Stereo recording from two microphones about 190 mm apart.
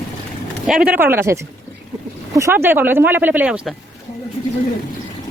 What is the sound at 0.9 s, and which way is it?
Speech, 10° right (ahead or behind).